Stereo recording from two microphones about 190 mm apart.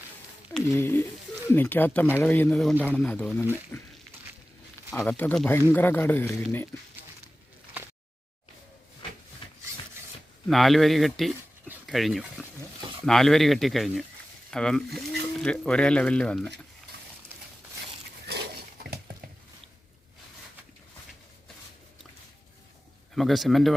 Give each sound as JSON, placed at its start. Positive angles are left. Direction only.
{"t": 0.6, "sound": "speech", "side_deg": 15}
{"t": 4.9, "sound": "speech", "side_deg": 10}
{"t": 10.5, "sound": "speech", "side_deg": 0}
{"t": 18.3, "sound": "pig", "side_deg": -60}
{"t": 23.1, "sound": "speech", "side_deg": 0}